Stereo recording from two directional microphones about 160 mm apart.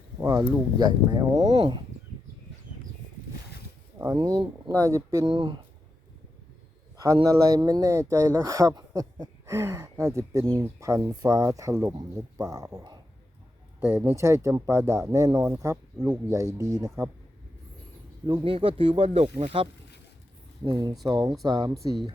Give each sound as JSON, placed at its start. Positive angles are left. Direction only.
{"t": 0.2, "sound": "speech", "side_deg": -15}
{"t": 1.4, "sound": "speech", "side_deg": -40}
{"t": 3.9, "sound": "a sound", "side_deg": -15}
{"t": 4.2, "sound": "speech", "side_deg": -25}
{"t": 5.3, "sound": "speech", "side_deg": -30}
{"t": 6.9, "sound": "speech", "side_deg": -20}
{"t": 18.3, "sound": "speech", "side_deg": -35}
{"t": 20.7, "sound": "speech", "side_deg": -30}